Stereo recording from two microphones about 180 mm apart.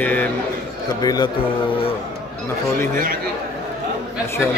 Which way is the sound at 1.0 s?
20° left (ahead or behind).